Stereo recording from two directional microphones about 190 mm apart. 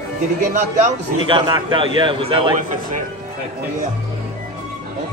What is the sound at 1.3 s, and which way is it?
A man's voice, 25° right (ahead or behind).